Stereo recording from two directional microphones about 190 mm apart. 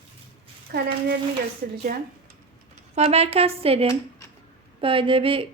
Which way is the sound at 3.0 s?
35° right (ahead or behind).